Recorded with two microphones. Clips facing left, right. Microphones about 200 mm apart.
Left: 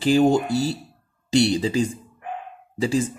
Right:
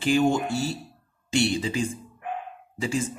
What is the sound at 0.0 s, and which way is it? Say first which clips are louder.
Speech: left 4 dB; 35° left (ahead or behind).